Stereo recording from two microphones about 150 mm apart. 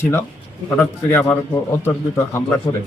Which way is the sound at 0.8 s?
15° left (ahead or behind).